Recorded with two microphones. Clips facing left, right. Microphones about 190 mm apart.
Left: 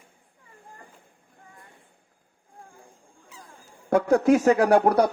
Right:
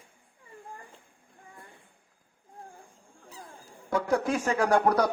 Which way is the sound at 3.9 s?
60° left (ahead or behind).